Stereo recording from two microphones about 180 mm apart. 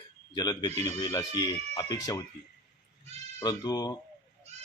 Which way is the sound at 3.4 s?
20° left (ahead or behind).